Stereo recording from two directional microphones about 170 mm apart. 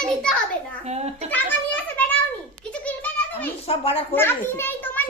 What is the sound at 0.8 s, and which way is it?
Speech, 40° right (ahead or behind).